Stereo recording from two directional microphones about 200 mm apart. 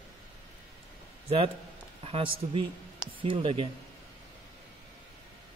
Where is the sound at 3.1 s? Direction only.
25° right (ahead or behind).